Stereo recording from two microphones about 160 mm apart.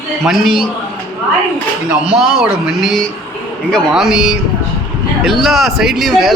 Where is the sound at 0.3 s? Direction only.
Centre (ahead or behind).